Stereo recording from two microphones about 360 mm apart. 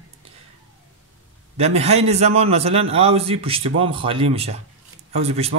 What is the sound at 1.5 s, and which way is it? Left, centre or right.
Speech, centre.